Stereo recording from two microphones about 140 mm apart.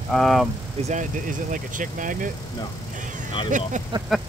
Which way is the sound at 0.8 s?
65° right (ahead or behind).